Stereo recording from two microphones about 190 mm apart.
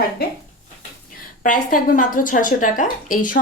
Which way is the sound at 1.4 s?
45° left (ahead or behind).